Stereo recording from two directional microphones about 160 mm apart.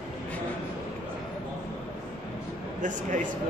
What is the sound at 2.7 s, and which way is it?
Speech, 55° right (ahead or behind).